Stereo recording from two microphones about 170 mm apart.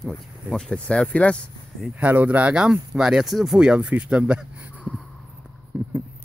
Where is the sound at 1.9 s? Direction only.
10° right (ahead or behind).